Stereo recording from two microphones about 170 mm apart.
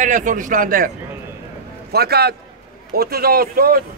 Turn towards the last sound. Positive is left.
turn(degrees=-60)  # may be behind; listen again after turning